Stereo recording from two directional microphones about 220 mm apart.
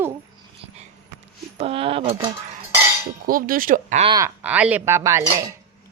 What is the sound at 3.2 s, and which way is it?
Speech, 40° right (ahead or behind).